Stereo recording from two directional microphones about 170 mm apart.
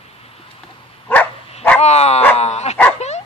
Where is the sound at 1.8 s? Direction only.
40° left (ahead or behind).